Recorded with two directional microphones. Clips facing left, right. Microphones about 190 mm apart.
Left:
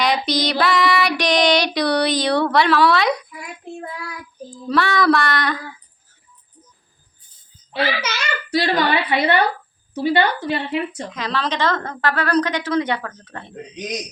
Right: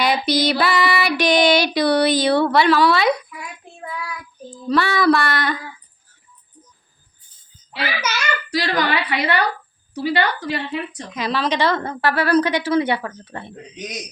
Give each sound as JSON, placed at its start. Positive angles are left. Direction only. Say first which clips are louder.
{"t": 0.0, "sound": "child singing", "louder": "right 1 dB", "side_deg": -5}
{"t": 4.7, "sound": "a sound", "louder": "right 1 dB", "side_deg": -5}
{"t": 7.7, "sound": "a woman's voice", "louder": "left 3 dB", "side_deg": 25}
{"t": 11.1, "sound": "a woman's voice", "louder": "right 5 dB", "side_deg": -10}